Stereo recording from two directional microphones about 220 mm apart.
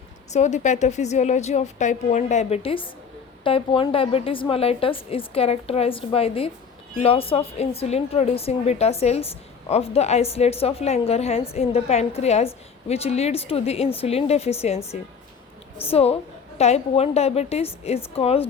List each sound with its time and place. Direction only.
0.3 s a woman's voice: 35° left (ahead or behind)
15.9 s a woman's voice: 30° left (ahead or behind)